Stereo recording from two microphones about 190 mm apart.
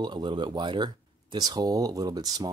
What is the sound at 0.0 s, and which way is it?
Speech, 25° right (ahead or behind).